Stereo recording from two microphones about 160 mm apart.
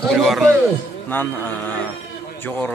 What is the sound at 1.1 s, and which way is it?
A man's voice, 10° left (ahead or behind).